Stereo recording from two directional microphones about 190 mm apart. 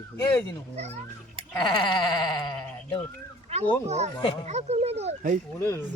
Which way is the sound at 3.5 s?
35° right (ahead or behind).